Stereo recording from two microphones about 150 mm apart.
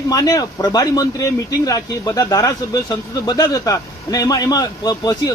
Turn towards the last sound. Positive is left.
turn(degrees=25)  # may be behind; listen again after turning